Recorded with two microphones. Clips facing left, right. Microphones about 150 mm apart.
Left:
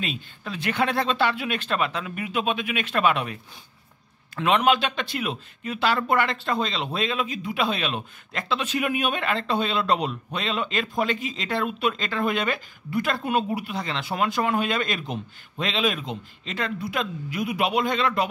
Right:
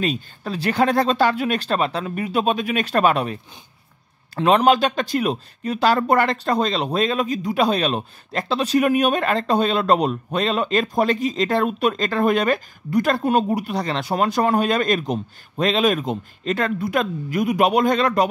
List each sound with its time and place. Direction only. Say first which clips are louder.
0.0 s speech: right 8 dB; 40° right (ahead or behind)
4.4 s speech: right 5 dB; 35° right (ahead or behind)